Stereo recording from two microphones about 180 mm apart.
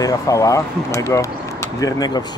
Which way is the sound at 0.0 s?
20° left (ahead or behind).